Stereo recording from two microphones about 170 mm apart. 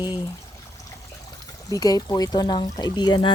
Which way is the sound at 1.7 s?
20° left (ahead or behind).